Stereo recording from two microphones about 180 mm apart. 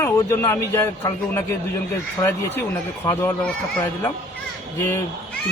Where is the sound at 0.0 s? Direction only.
15° left (ahead or behind).